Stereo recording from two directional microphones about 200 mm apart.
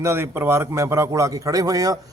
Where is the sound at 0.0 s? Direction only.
10° right (ahead or behind).